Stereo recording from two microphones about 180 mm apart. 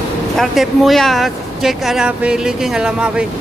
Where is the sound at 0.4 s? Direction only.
Centre (ahead or behind).